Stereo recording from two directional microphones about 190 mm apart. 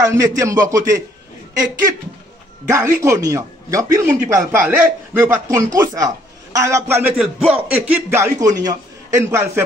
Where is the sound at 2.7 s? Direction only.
15° right (ahead or behind).